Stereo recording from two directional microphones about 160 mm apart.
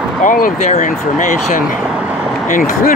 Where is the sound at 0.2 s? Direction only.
55° left (ahead or behind).